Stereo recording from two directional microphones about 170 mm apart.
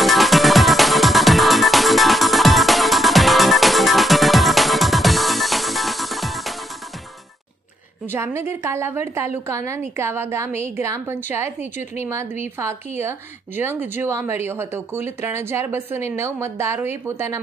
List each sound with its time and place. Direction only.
0.0 s music: centre (ahead or behind)
8.1 s speech: 15° right (ahead or behind)
13.6 s speech: 10° right (ahead or behind)